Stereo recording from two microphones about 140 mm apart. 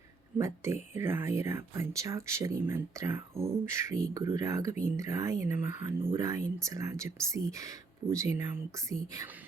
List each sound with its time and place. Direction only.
0.3 s speech: 20° right (ahead or behind)